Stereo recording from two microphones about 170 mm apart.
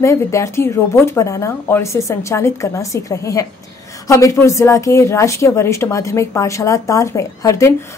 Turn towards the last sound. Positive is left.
turn(degrees=15)  # may be behind; listen again after turning